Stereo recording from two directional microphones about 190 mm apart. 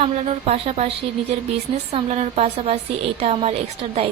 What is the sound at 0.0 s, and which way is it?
A woman's voice, 30° right (ahead or behind).